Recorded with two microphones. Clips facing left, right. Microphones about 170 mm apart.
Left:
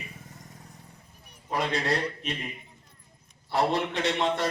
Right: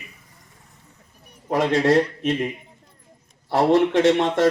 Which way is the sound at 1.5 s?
85° right.